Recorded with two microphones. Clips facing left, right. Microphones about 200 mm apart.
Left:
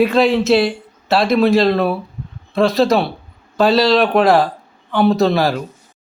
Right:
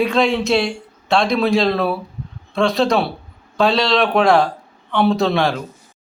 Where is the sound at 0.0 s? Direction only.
5° left (ahead or behind).